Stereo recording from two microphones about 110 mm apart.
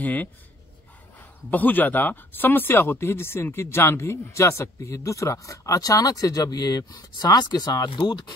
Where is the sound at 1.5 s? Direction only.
15° left (ahead or behind).